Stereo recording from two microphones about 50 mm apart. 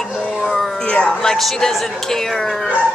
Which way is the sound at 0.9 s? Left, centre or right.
Left.